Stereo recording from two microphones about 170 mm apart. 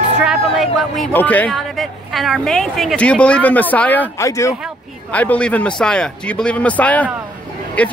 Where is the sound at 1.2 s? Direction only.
10° left (ahead or behind).